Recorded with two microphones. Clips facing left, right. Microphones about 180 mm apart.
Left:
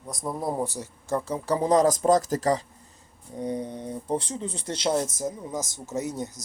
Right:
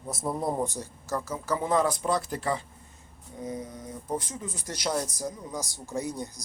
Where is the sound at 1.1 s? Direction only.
30° left (ahead or behind).